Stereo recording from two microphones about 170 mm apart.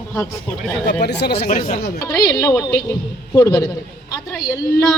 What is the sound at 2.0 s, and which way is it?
A woman's voice, 20° left (ahead or behind).